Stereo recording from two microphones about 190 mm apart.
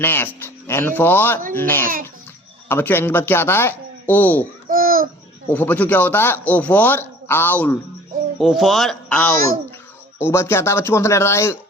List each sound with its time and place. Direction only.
0.0 s a man's voice: 10° left (ahead or behind)
4.7 s babbling: 50° right (ahead or behind)
5.5 s speech: 10° left (ahead or behind)
8.4 s speech: centre (ahead or behind)